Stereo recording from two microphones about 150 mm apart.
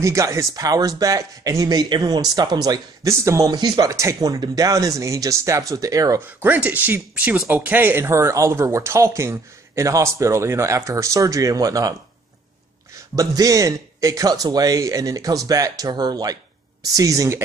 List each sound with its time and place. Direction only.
0.0 s speech: 20° right (ahead or behind)
13.1 s speech: 25° right (ahead or behind)